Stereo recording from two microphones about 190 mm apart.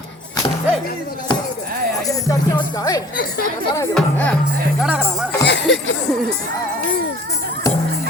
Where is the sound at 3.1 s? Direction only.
50° left (ahead or behind).